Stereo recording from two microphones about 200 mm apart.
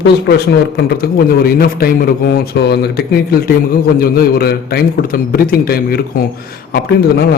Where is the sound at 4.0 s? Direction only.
50° left (ahead or behind).